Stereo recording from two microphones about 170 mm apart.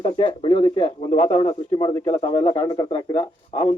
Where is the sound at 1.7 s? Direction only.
25° left (ahead or behind).